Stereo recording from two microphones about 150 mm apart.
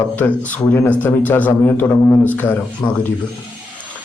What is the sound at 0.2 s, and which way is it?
A man's voice, 10° left (ahead or behind).